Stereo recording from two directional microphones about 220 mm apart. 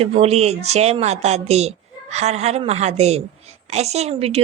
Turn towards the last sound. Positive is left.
turn(degrees=-30)  # may be behind; listen again after turning